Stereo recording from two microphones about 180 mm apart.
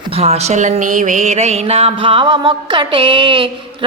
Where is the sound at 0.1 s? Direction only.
35° right (ahead or behind).